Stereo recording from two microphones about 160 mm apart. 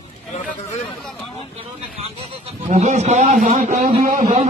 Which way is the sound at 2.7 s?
45° right (ahead or behind).